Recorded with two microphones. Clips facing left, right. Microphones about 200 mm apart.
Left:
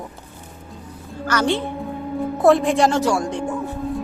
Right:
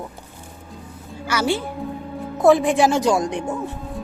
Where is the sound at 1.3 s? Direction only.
10° right (ahead or behind).